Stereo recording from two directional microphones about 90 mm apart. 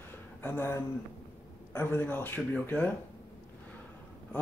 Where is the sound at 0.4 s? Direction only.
25° left (ahead or behind).